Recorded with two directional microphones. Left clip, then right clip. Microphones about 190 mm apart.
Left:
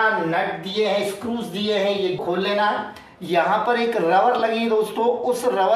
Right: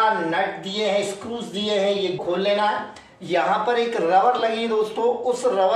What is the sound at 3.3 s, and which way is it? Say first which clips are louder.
Speech: left 1 dB; 25° left (ahead or behind).